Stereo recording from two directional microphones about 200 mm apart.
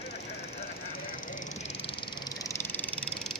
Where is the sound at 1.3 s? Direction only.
40° left (ahead or behind); by 3.1 s 10° left (ahead or behind).